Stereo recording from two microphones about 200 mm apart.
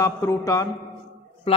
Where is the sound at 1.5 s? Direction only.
30° left (ahead or behind).